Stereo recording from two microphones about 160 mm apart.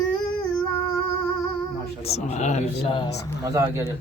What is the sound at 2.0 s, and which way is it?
Speech, 40° left (ahead or behind).